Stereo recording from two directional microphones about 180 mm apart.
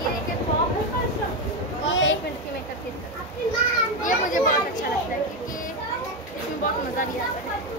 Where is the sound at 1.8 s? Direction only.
90° left.